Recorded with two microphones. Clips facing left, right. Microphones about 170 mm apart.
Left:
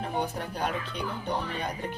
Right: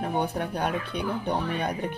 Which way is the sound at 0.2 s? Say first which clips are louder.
Right 3 dB; 60° right (ahead or behind).